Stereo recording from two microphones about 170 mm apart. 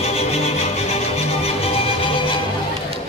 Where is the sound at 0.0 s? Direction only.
40° left (ahead or behind).